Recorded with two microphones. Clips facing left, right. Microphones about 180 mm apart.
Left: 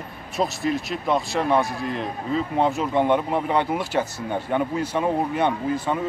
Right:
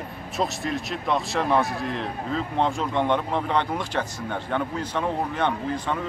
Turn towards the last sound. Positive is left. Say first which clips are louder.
# left 3 dB
turn(degrees=10)  # may be behind; listen again after turning